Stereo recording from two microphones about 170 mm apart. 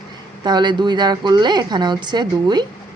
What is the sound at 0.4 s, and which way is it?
A woman's voice, 25° right (ahead or behind).